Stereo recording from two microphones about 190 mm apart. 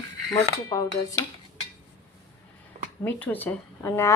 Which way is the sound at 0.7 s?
15° left (ahead or behind).